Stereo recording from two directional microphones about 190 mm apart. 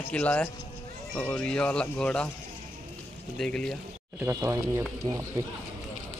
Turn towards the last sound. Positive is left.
turn(degrees=-15)  # may be behind; listen again after turning